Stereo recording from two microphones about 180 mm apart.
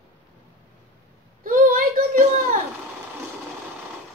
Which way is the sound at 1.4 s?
50° right (ahead or behind).